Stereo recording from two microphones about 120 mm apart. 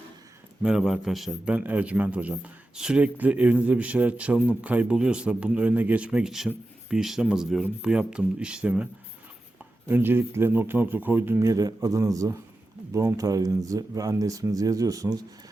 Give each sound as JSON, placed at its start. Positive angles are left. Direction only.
{"t": 0.6, "sound": "a man's voice", "side_deg": -5}
{"t": 9.9, "sound": "a man's voice", "side_deg": -15}